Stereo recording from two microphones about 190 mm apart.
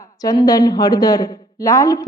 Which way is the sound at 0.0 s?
20° left (ahead or behind).